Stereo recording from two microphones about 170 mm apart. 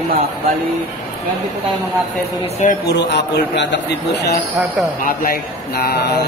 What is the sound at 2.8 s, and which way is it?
A man's voice, 75° left (ahead or behind).